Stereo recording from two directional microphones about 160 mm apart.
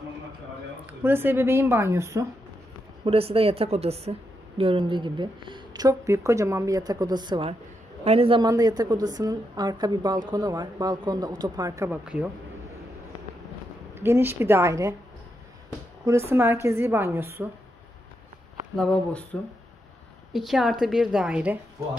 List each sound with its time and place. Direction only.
1.0 s a woman's voice: 15° right (ahead or behind)
3.1 s a man's voice: 40° right (ahead or behind)
8.5 s speech: 25° right (ahead or behind)
12.0 s a woman's voice: 5° right (ahead or behind)
13.9 s a woman's voice: 15° right (ahead or behind)
16.1 s a woman's voice: 15° right (ahead or behind)
18.8 s speech: 5° left (ahead or behind)
20.3 s a woman's voice: centre (ahead or behind)